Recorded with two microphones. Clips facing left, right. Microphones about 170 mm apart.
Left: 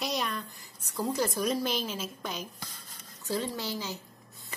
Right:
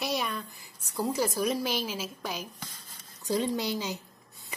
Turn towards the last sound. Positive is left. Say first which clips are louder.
# right 4 dB
turn(degrees=-15)  # may be behind; listen again after turning